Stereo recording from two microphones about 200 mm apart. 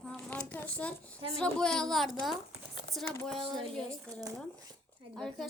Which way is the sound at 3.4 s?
25° right (ahead or behind).